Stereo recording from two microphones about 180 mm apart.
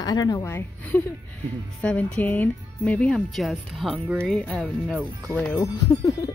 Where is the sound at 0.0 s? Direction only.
20° left (ahead or behind).